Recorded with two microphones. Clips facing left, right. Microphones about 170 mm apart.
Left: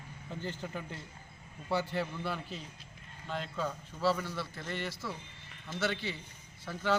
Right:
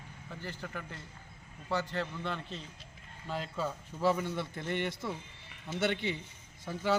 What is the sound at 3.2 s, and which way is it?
A man's voice, 5° right (ahead or behind).